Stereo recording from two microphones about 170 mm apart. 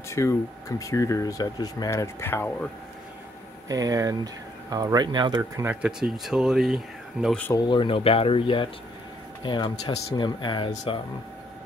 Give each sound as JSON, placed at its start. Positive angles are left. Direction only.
{"t": 0.1, "sound": "speech", "side_deg": 15}
{"t": 3.6, "sound": "speech", "side_deg": -20}
{"t": 5.6, "sound": "speech", "side_deg": -10}
{"t": 7.6, "sound": "speech", "side_deg": 30}